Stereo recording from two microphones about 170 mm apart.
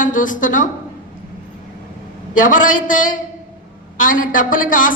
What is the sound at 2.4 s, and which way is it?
A man's voice, 50° left (ahead or behind).